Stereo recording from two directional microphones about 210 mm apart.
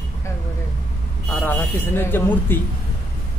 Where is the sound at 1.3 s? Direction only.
10° left (ahead or behind).